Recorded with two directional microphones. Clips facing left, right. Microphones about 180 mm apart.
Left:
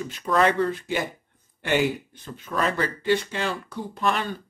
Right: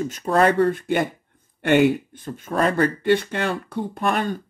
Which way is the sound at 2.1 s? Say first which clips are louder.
Right 5 dB; 50° right (ahead or behind).